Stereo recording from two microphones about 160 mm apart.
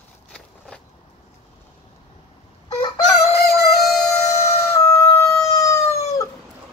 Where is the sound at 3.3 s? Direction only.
80° left.